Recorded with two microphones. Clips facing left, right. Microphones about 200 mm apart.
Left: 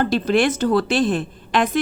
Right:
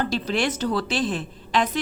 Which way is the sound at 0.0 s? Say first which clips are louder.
Left 6 dB; 55° left (ahead or behind).